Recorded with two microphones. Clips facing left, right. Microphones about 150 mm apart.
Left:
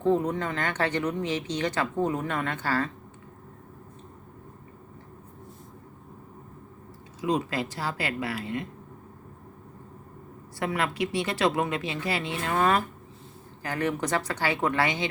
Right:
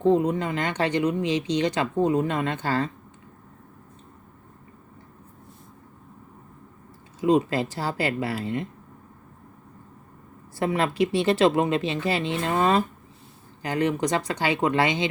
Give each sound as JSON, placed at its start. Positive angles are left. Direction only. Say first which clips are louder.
{"t": 0.0, "sound": "speech", "louder": "right 4 dB", "side_deg": -15}
{"t": 7.2, "sound": "speech", "louder": "right 6 dB", "side_deg": -30}
{"t": 10.6, "sound": "a woman's voice", "louder": "right 5 dB", "side_deg": -25}